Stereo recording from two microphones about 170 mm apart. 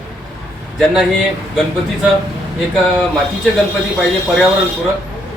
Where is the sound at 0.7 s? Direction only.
Centre (ahead or behind).